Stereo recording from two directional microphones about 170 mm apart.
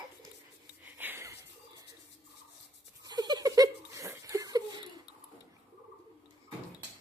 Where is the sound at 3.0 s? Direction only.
25° right (ahead or behind).